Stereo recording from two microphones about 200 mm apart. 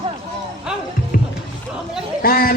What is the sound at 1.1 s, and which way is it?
Music, 45° left (ahead or behind).